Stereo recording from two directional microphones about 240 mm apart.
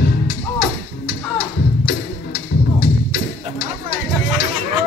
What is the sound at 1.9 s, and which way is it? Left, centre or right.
Music, left.